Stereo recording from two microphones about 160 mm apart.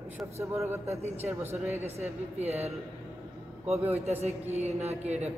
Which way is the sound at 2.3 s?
40° right (ahead or behind).